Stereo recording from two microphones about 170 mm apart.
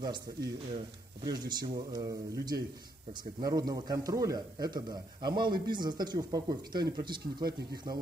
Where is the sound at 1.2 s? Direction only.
25° right (ahead or behind).